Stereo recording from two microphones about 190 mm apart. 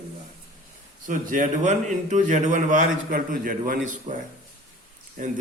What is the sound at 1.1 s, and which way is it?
A man's voice, 45° right (ahead or behind).